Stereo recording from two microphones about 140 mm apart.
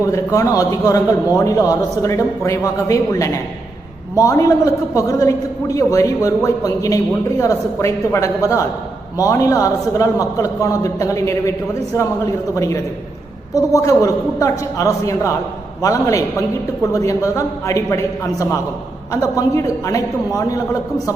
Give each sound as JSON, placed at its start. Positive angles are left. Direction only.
{"t": 0.1, "sound": "a man's voice", "side_deg": 25}